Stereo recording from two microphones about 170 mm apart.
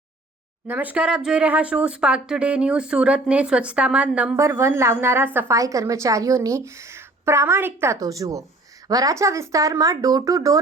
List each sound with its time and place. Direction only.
0.7 s speech: 10° right (ahead or behind)